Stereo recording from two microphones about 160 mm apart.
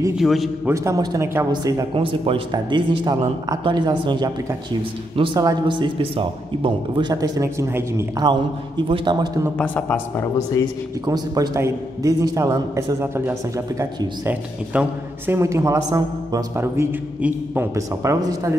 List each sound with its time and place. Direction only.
0.2 s a man's voice: centre (ahead or behind)
0.7 s a man's voice: 20° right (ahead or behind)
2.0 s a man's voice: 35° right (ahead or behind)
9.6 s a man's voice: 10° left (ahead or behind)
11.1 s a man's voice: 25° right (ahead or behind)